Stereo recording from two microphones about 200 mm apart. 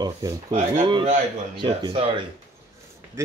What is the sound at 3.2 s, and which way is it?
Speech, 10° right (ahead or behind).